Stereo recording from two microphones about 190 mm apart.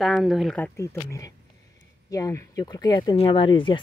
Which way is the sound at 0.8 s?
15° left (ahead or behind).